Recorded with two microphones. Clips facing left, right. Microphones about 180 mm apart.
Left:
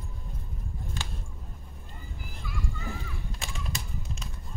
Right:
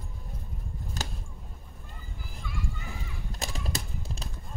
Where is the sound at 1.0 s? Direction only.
40° right (ahead or behind).